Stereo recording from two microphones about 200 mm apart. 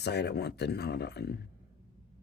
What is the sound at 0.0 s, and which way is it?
Speech, 55° left (ahead or behind).